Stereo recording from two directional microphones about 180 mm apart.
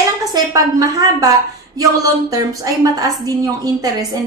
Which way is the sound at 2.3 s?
20° right (ahead or behind).